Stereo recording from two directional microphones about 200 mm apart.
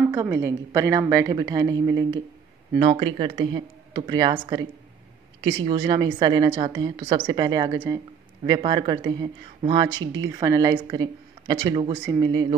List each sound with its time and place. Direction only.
0.1 s a woman's voice: 15° right (ahead or behind)